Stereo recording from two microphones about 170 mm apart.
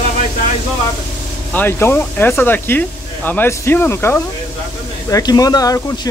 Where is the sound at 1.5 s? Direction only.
10° left (ahead or behind).